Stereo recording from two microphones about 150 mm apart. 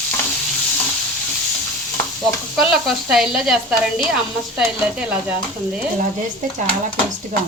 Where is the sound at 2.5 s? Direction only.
Centre (ahead or behind).